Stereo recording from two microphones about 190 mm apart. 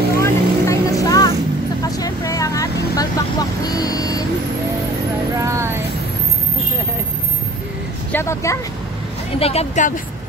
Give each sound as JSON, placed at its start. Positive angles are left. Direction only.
{"t": 0.2, "sound": "vehicle", "side_deg": 15}
{"t": 5.4, "sound": "a sound", "side_deg": -15}
{"t": 8.1, "sound": "vehicle", "side_deg": 15}
{"t": 9.4, "sound": "speech", "side_deg": 30}